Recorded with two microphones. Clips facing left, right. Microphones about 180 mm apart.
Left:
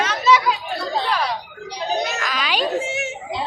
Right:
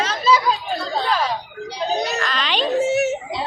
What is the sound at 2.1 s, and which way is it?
Music, 10° left (ahead or behind).